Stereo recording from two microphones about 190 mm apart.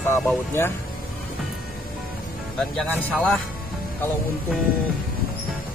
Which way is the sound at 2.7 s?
5° left (ahead or behind).